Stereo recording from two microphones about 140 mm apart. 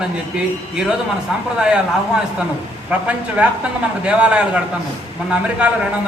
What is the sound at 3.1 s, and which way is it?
A woman's voice, 10° right (ahead or behind).